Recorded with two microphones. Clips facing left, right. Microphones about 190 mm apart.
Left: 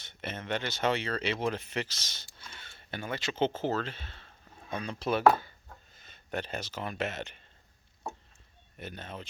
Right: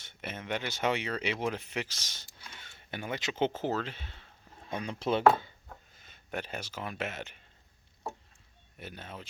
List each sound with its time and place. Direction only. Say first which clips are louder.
0.0 s speech: left 2 dB; 10° right (ahead or behind)
6.1 s speech: left 2 dB; 10° right (ahead or behind)
8.8 s speech: left 2 dB; 10° right (ahead or behind)